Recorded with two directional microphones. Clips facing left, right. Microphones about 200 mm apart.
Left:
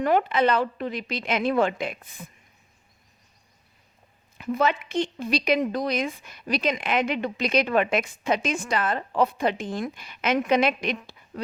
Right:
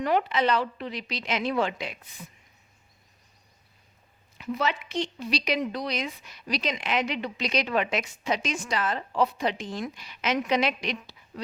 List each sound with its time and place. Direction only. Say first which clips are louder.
0.0 s speech: left 3 dB; 50° left (ahead or behind)
4.4 s speech: left 5 dB; 50° left (ahead or behind)